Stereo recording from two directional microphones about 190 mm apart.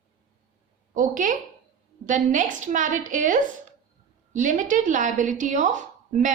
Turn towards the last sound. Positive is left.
turn(degrees=-40)  # may be behind; listen again after turning